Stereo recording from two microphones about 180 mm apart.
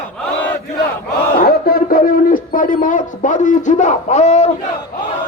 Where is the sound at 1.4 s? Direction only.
55° left (ahead or behind); by 4.5 s 40° left (ahead or behind).